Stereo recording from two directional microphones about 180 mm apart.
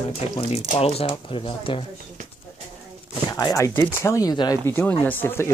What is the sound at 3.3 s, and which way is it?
Speech, 20° left (ahead or behind).